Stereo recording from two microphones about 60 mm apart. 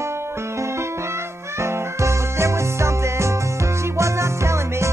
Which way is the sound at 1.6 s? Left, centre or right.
Right.